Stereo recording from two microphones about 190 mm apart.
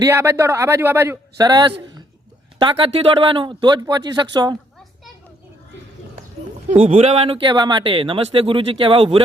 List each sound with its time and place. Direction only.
0.0 s a man's voice: 15° right (ahead or behind)
6.8 s speech: 30° right (ahead or behind)